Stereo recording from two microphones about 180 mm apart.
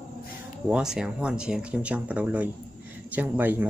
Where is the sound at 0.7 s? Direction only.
5° right (ahead or behind).